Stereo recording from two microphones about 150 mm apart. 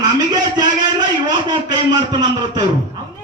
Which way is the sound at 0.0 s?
30° right (ahead or behind).